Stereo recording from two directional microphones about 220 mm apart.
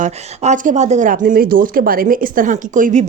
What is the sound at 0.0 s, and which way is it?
Speech, 35° right (ahead or behind).